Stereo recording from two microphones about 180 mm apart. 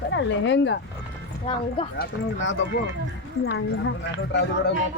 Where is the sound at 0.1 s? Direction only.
85° left.